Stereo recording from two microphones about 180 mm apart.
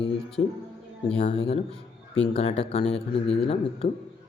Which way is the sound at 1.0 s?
35° left (ahead or behind).